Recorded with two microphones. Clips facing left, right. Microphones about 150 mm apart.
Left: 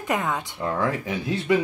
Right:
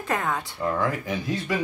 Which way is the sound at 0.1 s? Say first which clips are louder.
Left 1 dB; 20° left (ahead or behind).